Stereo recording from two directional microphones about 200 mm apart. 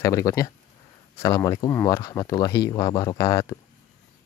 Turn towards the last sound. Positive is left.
turn(degrees=15)  # may be behind; listen again after turning